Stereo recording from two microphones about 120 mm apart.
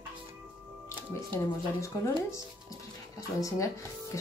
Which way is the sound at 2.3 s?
30° left (ahead or behind).